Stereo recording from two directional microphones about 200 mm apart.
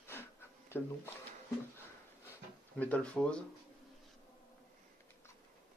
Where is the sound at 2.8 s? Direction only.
5° left (ahead or behind).